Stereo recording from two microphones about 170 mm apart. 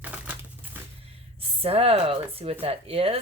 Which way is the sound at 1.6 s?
35° right (ahead or behind).